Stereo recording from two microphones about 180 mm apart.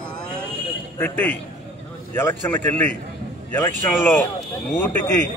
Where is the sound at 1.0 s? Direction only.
10° left (ahead or behind).